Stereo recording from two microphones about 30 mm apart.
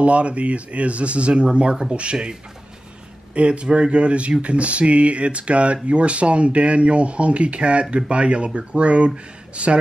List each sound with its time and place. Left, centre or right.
0.0 s speech: right
3.3 s speech: right